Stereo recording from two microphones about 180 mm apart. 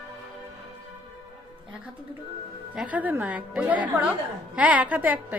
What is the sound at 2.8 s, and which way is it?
A woman's voice, 10° right (ahead or behind).